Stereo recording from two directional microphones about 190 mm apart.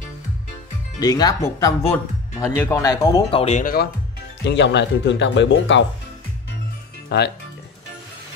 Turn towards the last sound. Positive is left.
turn(degrees=60)  # may be behind; listen again after turning